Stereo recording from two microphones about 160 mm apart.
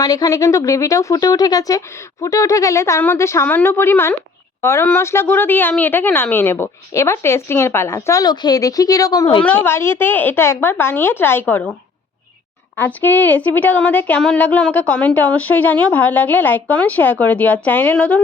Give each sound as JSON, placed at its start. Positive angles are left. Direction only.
{"t": 0.0, "sound": "a woman's voice", "side_deg": 20}
{"t": 12.7, "sound": "a woman's voice", "side_deg": 10}